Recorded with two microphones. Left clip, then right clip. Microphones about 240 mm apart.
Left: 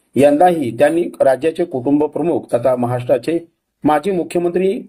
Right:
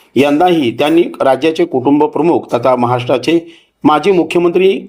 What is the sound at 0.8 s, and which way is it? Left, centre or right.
Speech, right.